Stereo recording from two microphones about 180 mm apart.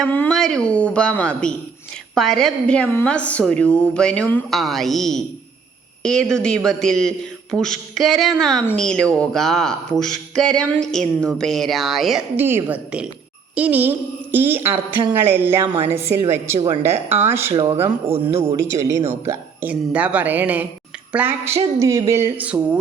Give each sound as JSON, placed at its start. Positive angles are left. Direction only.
{"t": 0.1, "sound": "speech", "side_deg": 5}
{"t": 12.4, "sound": "speech", "side_deg": -10}
{"t": 16.6, "sound": "speech", "side_deg": -30}
{"t": 16.8, "sound": "speech", "side_deg": -10}
{"t": 18.1, "sound": "speech", "side_deg": -35}
{"t": 18.8, "sound": "speech", "side_deg": -15}